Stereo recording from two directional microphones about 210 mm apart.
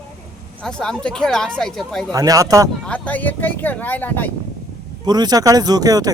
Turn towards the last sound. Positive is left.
turn(degrees=-15)  # may be behind; listen again after turning